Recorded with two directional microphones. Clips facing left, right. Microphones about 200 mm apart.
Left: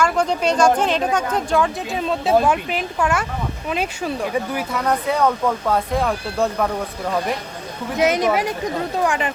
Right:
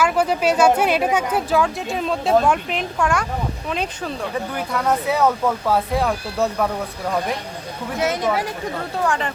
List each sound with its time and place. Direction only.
0.0 s speech: 5° right (ahead or behind)
7.9 s speech: 15° left (ahead or behind)